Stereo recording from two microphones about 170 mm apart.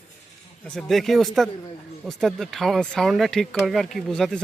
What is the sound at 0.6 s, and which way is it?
Speech, 5° left (ahead or behind).